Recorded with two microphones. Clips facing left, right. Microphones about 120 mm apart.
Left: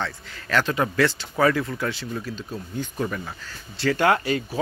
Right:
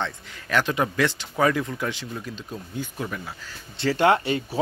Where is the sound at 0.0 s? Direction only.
15° right (ahead or behind).